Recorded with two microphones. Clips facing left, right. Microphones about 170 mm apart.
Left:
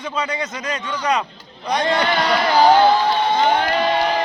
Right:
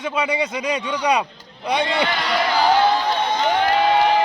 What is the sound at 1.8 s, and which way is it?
Speech, 40° left (ahead or behind).